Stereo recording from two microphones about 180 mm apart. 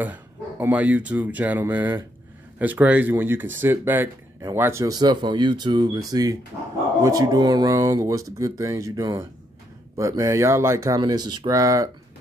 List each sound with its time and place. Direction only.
0.0 s speech: 10° right (ahead or behind)